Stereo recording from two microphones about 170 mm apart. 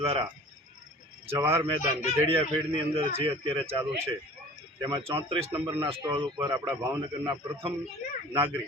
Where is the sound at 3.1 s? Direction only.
30° right (ahead or behind).